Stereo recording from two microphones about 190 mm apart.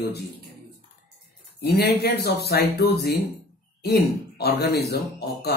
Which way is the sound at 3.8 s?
55° left (ahead or behind).